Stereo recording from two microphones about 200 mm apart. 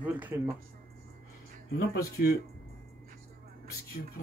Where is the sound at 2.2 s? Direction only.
50° left (ahead or behind).